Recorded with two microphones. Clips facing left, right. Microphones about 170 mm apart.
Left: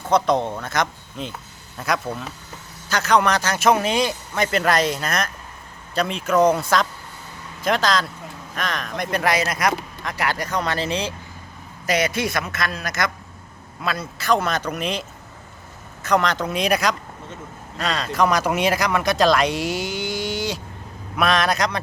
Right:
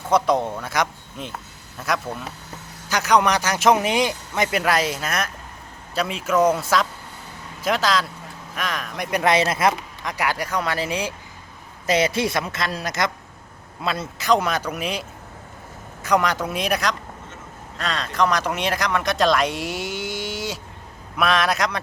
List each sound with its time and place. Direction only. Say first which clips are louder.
0.1 s a man's voice: even; 10° right (ahead or behind)
2.9 s a man's voice: even; 15° right (ahead or behind)
4.6 s a man's voice: left 2 dB; 5° right (ahead or behind)
9.2 s a woman's voice: right 4 dB; 25° right (ahead or behind)
10.0 s a man's voice: right 1 dB; 15° right (ahead or behind)
11.9 s a woman's voice: right 2 dB; 30° right (ahead or behind); by 15.0 s 10° right (ahead or behind)
16.0 s speech: even; 10° right (ahead or behind)